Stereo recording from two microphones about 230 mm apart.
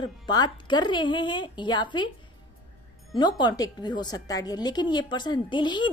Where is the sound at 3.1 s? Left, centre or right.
Centre.